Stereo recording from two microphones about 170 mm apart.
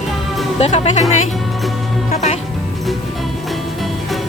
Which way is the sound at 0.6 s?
40° left (ahead or behind).